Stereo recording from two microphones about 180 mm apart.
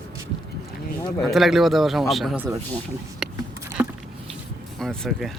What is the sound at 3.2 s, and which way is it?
Vehicle, centre (ahead or behind).